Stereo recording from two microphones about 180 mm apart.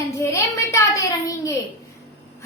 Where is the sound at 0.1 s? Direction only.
15° left (ahead or behind).